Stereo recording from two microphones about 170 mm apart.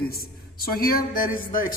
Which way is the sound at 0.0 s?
60° left (ahead or behind).